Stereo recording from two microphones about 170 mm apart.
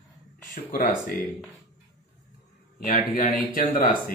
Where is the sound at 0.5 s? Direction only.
55° left (ahead or behind).